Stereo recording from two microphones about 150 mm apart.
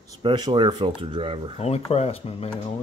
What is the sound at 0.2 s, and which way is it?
Speech, 30° right (ahead or behind).